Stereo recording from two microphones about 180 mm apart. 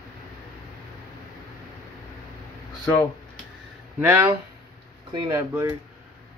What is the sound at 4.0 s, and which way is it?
Speech, 10° right (ahead or behind).